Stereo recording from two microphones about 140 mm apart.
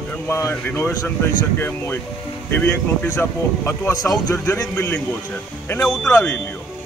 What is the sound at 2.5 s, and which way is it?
Speech, 15° left (ahead or behind).